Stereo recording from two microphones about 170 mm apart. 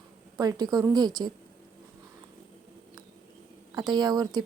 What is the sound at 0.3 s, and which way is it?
Speech, 25° right (ahead or behind).